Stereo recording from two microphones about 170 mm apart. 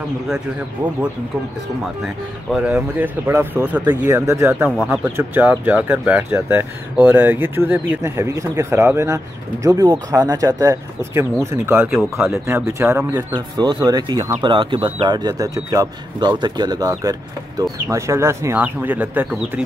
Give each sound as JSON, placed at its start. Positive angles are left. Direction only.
{"t": 2.5, "sound": "speech", "side_deg": -10}